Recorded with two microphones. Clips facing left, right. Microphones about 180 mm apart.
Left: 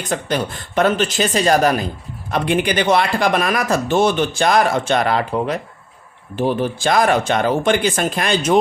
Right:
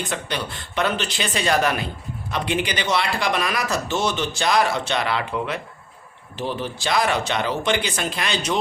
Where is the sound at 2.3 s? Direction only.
50° left (ahead or behind).